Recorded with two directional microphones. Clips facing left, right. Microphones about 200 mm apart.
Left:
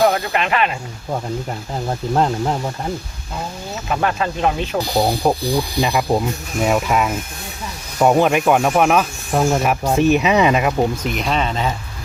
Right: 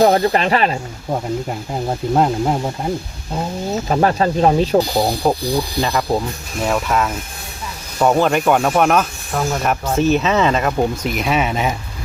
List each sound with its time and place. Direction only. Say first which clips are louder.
0.0 s speech: right 4 dB; 35° right (ahead or behind)
1.5 s speech: right 2 dB; 10° right (ahead or behind)
3.8 s speech: right 4 dB; 35° right (ahead or behind)
4.9 s speech: even; 5° left (ahead or behind)
9.3 s speech: left 4 dB; 25° left (ahead or behind)
9.6 s speech: left 1 dB; 15° left (ahead or behind); by 11.7 s 10° right (ahead or behind)